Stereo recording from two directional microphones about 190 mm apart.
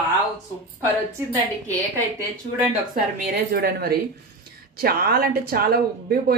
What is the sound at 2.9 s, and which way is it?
A woman's voice, 55° right (ahead or behind).